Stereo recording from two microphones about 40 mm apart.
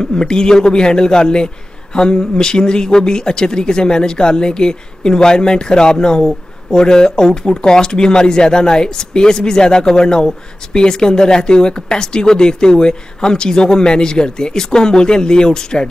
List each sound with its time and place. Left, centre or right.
0.0 s speech: centre